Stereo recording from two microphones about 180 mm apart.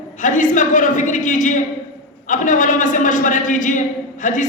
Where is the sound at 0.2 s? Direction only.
45° left (ahead or behind).